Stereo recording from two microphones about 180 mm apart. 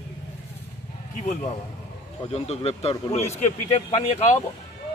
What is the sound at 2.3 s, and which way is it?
Speech, 35° left (ahead or behind).